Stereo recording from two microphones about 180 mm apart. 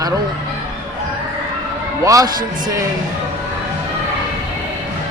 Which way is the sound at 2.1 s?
20° right (ahead or behind).